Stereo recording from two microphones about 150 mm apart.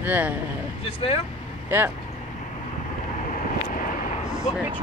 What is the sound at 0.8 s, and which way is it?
Speech, 40° left (ahead or behind).